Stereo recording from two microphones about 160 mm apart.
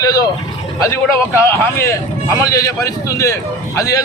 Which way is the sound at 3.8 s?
20° left (ahead or behind).